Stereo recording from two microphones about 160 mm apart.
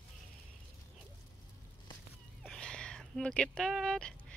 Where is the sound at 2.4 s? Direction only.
5° left (ahead or behind).